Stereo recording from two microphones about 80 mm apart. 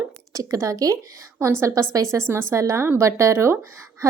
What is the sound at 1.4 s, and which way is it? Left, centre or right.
Speech, right.